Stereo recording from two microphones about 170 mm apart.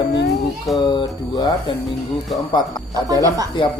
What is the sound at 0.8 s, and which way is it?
Speech, 25° left (ahead or behind).